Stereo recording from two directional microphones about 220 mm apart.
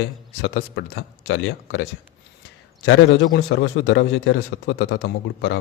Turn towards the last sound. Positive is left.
turn(degrees=50)  # may be behind; listen again after turning